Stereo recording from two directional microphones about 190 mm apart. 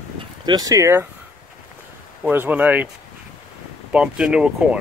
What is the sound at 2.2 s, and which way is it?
Speech, 10° right (ahead or behind).